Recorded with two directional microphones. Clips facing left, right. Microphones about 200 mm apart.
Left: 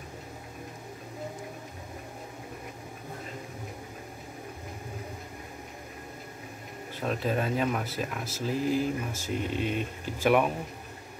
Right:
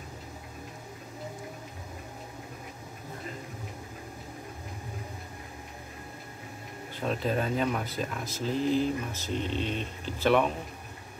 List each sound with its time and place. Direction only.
7.0 s speech: centre (ahead or behind)